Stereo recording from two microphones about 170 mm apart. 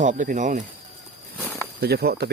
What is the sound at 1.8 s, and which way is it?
Speech, 70° right (ahead or behind).